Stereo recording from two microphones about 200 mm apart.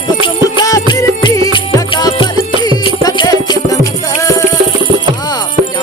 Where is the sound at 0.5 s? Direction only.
20° left (ahead or behind).